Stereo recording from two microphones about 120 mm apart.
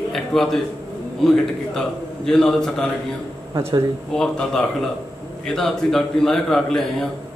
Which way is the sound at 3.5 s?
25° right (ahead or behind).